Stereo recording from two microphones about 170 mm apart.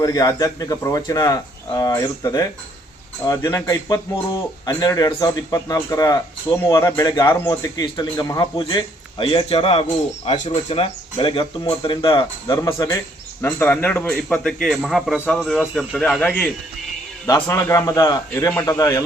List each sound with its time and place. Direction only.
0.0 s a man's voice: 20° left (ahead or behind)
17.2 s speech: 20° left (ahead or behind)